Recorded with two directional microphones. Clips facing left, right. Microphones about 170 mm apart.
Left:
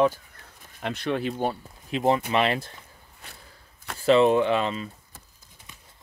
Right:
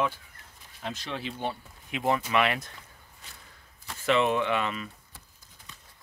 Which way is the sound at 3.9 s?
35° left (ahead or behind).